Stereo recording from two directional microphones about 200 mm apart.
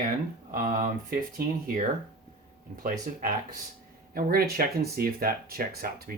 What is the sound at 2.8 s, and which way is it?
Speech, 40° right (ahead or behind).